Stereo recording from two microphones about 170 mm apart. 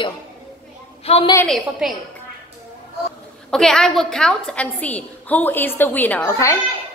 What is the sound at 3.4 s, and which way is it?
A woman's voice, 5° left (ahead or behind).